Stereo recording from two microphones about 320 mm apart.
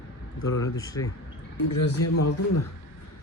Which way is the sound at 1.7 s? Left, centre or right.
Left.